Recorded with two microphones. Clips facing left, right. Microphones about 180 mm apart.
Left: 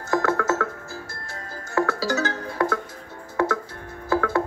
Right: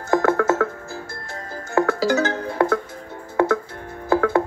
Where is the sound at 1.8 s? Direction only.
25° right (ahead or behind).